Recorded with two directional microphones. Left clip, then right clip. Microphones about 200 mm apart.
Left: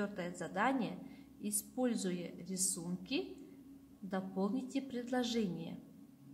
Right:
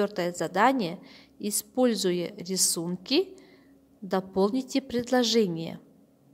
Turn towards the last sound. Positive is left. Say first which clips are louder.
# right 14 dB
turn(degrees=-45)  # may be behind; listen again after turning